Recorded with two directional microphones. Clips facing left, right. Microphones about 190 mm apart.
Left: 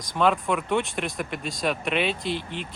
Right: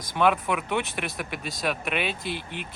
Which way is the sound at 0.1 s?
5° right (ahead or behind).